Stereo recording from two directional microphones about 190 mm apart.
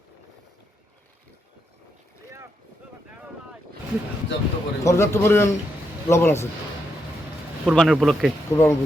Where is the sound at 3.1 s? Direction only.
5° right (ahead or behind).